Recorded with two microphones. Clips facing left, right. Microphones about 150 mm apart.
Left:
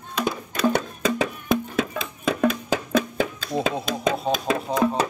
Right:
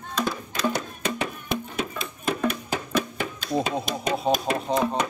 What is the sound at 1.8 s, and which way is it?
Music, 90° left.